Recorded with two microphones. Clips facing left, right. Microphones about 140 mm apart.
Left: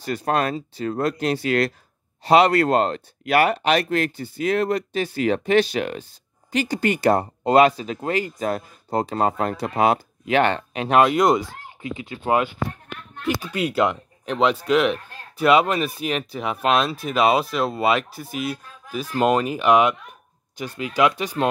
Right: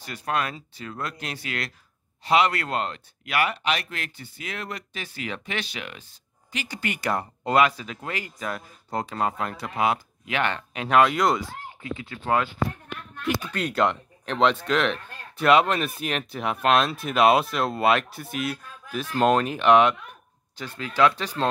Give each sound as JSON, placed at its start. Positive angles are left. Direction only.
{"t": 0.0, "sound": "speech", "side_deg": 35}
{"t": 13.2, "sound": "speech", "side_deg": 5}